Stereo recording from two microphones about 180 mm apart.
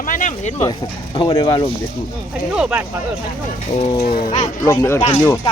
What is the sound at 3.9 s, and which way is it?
Speech, 55° left (ahead or behind).